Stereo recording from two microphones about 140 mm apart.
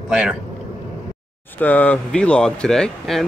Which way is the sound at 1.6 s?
10° left (ahead or behind).